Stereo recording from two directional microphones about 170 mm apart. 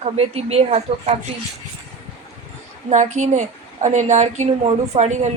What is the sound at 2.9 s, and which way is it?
A woman's voice, 45° right (ahead or behind).